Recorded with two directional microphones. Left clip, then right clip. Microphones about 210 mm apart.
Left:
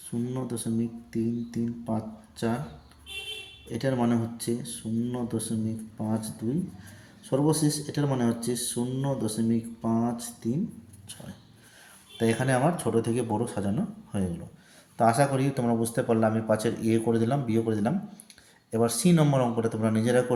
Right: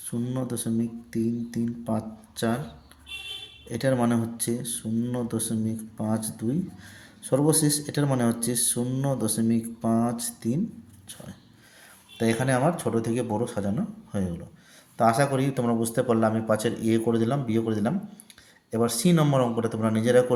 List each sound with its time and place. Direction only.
0.3 s speech: 25° right (ahead or behind)
3.7 s speech: 25° right (ahead or behind)
12.1 s a man's voice: 15° right (ahead or behind)